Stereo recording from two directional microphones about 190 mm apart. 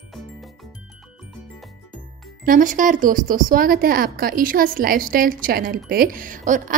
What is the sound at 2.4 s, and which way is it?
Speech, 45° right (ahead or behind).